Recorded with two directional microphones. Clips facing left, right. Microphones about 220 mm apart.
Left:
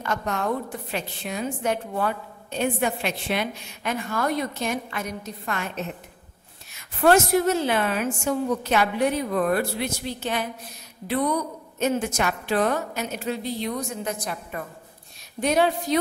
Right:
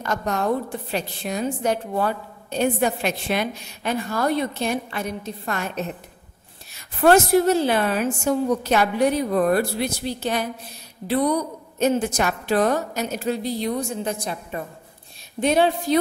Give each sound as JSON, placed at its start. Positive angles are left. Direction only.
{"t": 0.0, "sound": "a woman's voice", "side_deg": -40}